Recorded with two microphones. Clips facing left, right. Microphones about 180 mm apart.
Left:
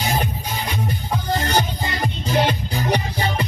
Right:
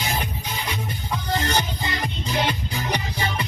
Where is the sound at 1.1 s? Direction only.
40° left (ahead or behind).